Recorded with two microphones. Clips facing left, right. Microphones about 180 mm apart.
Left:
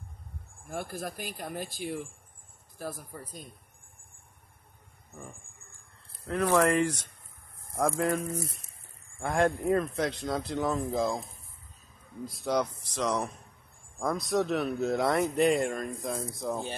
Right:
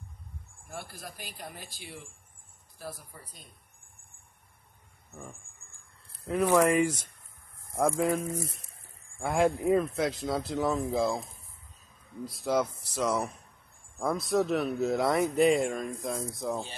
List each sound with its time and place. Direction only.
0.7 s speech: 50° left (ahead or behind)
6.2 s speech: 10° right (ahead or behind)
12.3 s speech: centre (ahead or behind)